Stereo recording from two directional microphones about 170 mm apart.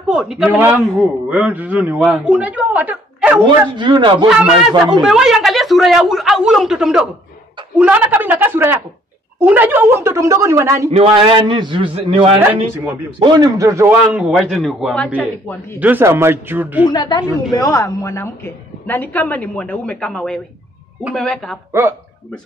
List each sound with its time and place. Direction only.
0.1 s a man's voice: 5° right (ahead or behind)
3.7 s speech: 25° right (ahead or behind)
4.3 s a woman's voice: 5° right (ahead or behind)
10.9 s a man's voice: 35° right (ahead or behind); by 15.1 s centre (ahead or behind)
15.1 s a woman's voice: 10° left (ahead or behind)
15.8 s a man's voice: 10° right (ahead or behind)
16.8 s a woman's voice: 25° left (ahead or behind); by 21.5 s 5° left (ahead or behind)